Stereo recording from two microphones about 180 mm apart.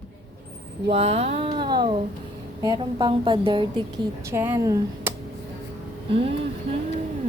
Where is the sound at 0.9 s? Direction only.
35° right (ahead or behind).